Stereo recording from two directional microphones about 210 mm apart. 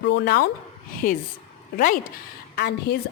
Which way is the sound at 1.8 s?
35° left (ahead or behind).